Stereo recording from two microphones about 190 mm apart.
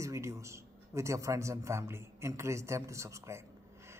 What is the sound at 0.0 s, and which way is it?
Speech, 15° right (ahead or behind).